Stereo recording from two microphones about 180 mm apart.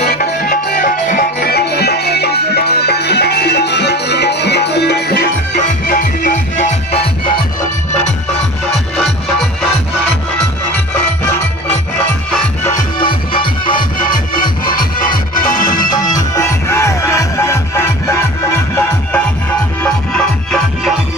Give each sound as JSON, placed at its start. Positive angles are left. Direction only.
{"t": 0.0, "sound": "music", "side_deg": 60}
{"t": 5.9, "sound": "music", "side_deg": 50}
{"t": 8.7, "sound": "music", "side_deg": 0}
{"t": 13.0, "sound": "music", "side_deg": 30}
{"t": 14.1, "sound": "music", "side_deg": 50}
{"t": 15.6, "sound": "music", "side_deg": 20}